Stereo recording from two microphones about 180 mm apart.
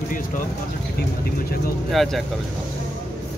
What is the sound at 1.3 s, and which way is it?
Speech, 55° left (ahead or behind).